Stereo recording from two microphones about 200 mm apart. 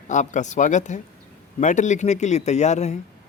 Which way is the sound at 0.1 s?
40° left (ahead or behind).